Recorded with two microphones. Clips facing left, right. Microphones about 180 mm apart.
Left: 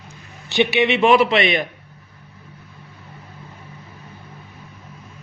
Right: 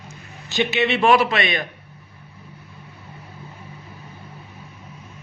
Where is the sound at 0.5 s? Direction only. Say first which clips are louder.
Left 3 dB; 15° left (ahead or behind).